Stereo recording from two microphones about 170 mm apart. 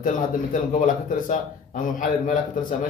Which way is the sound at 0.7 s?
50° left (ahead or behind).